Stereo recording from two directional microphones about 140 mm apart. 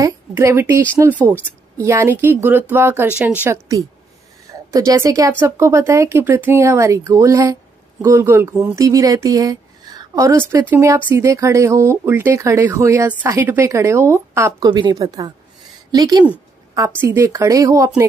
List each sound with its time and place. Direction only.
0.0 s a woman's voice: 20° right (ahead or behind)
14.7 s speech: 30° right (ahead or behind)